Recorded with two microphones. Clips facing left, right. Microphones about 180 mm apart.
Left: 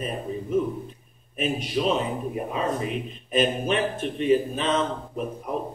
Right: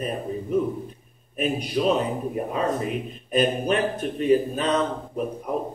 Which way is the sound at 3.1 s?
40° right (ahead or behind).